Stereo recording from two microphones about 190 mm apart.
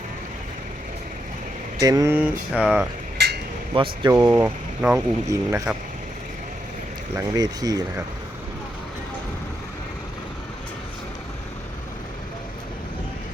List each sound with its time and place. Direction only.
1.8 s speech: 20° right (ahead or behind)
2.1 s a sound: 5° right (ahead or behind)
3.8 s speech: 20° right (ahead or behind)
4.4 s speech: 5° right (ahead or behind)
7.2 s speech: 20° right (ahead or behind)